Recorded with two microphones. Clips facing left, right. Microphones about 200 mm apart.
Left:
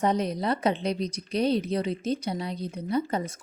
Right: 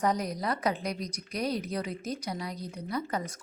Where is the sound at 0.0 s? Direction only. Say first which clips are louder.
Left 4 dB; 25° left (ahead or behind).